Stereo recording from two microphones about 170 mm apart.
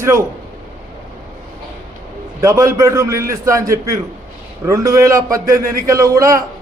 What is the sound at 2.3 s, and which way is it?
A man's voice, 20° right (ahead or behind).